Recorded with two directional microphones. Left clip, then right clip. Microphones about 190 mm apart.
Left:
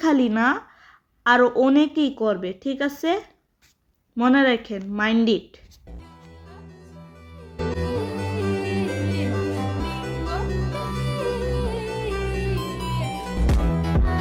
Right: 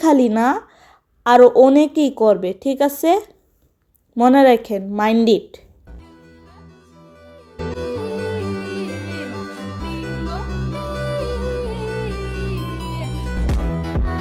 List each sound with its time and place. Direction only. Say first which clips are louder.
0.0 s a woman's voice: right 5 dB; 15° right (ahead or behind)
7.3 s music: right 1 dB; centre (ahead or behind)